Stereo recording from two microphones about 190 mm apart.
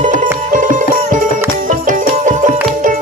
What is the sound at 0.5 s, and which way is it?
Sitar, 45° right (ahead or behind).